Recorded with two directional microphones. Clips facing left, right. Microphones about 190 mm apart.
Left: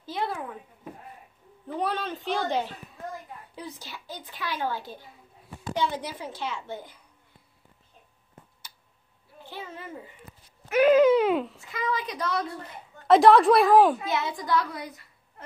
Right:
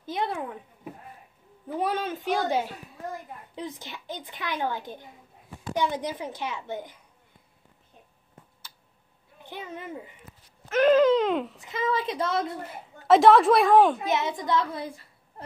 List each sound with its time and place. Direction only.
0.0 s a sound: 20° right (ahead or behind)
1.7 s a woman's voice: 15° right (ahead or behind)
9.4 s speech: 15° right (ahead or behind)
10.7 s speech: 10° left (ahead or behind)
11.6 s a woman's voice: 25° right (ahead or behind)
12.6 s a woman's voice: 5° right (ahead or behind)
14.0 s a child's voice: 20° right (ahead or behind)